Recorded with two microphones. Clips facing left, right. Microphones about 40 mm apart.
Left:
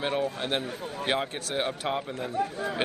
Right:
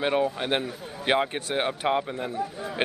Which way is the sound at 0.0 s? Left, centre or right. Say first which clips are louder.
Right 4 dB; right.